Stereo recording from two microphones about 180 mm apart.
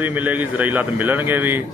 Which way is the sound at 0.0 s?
10° right (ahead or behind).